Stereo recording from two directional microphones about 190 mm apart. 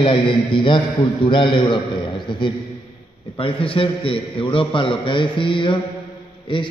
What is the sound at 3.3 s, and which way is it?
A man's voice, 30° left (ahead or behind).